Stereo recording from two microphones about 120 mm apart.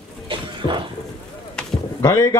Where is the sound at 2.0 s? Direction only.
25° left (ahead or behind).